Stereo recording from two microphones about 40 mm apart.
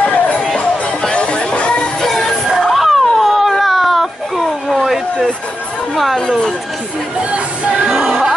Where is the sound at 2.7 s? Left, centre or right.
Centre.